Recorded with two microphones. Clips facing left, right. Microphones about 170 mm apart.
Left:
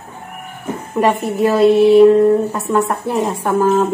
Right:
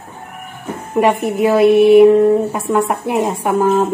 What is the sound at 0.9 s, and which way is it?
A woman's voice, 20° right (ahead or behind).